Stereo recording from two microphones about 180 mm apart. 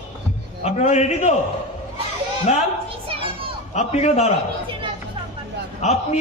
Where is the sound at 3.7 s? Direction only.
40° left (ahead or behind).